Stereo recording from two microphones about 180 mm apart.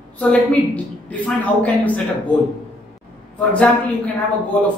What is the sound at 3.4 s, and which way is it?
Speech, 10° left (ahead or behind).